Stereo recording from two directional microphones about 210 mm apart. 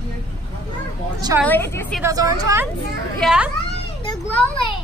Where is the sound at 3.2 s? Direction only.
5° right (ahead or behind).